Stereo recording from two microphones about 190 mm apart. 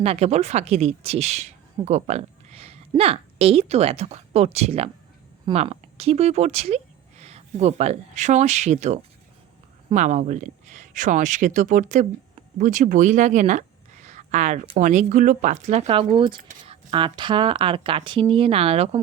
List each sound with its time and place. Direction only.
0.0 s speech: 35° right (ahead or behind)